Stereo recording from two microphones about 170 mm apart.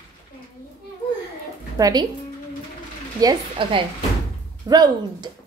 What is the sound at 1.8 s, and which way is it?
Speech, 25° right (ahead or behind).